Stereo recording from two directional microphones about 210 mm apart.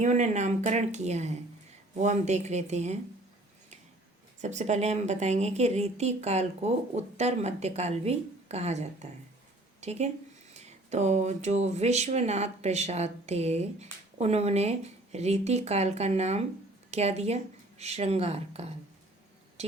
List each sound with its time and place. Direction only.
0.0 s speech: 35° right (ahead or behind)
4.4 s speech: 35° right (ahead or behind)